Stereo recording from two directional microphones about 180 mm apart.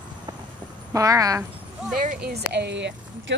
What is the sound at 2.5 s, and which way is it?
Speech, 70° right (ahead or behind).